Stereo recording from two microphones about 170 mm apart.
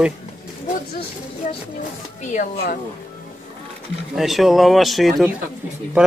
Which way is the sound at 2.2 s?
50° left (ahead or behind).